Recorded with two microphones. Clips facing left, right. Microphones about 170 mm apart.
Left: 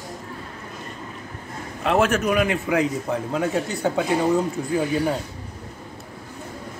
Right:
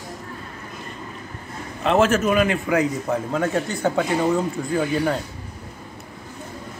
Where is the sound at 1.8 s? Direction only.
5° left (ahead or behind).